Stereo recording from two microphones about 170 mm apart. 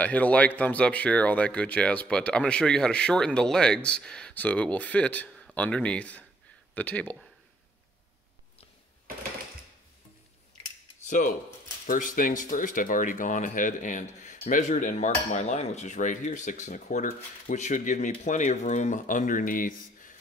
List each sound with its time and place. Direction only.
0.0 s speech: 10° left (ahead or behind)
11.0 s speech: 45° left (ahead or behind)